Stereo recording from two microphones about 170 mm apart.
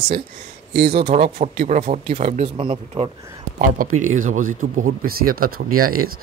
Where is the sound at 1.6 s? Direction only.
50° right (ahead or behind); by 3.1 s 30° right (ahead or behind).